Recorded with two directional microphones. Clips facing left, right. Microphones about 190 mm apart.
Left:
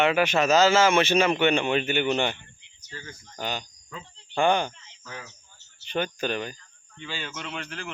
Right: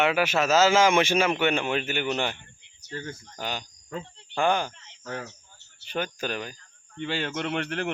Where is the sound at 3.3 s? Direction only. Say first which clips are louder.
Left 3 dB; 10° right (ahead or behind).